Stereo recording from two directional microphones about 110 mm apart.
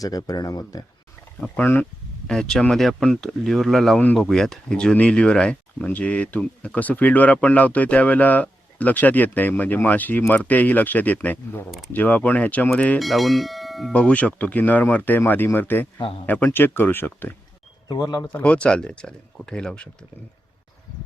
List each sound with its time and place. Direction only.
0.0 s speech: 35° left (ahead or behind)
1.4 s speech: 15° left (ahead or behind)
13.0 s speech: centre (ahead or behind)
13.9 s speech: 10° left (ahead or behind)
16.0 s speech: 50° left (ahead or behind)
16.2 s speech: 20° left (ahead or behind)
17.8 s speech: 35° left (ahead or behind)
18.3 s speech: 10° left (ahead or behind)